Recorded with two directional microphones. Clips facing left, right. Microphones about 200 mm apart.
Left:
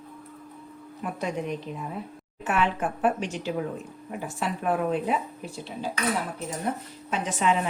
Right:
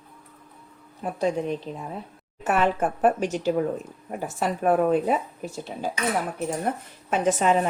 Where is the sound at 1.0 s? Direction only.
30° right (ahead or behind).